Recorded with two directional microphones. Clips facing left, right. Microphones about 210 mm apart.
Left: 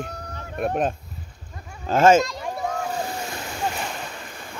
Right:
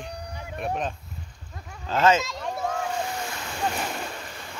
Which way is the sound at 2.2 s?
Centre (ahead or behind).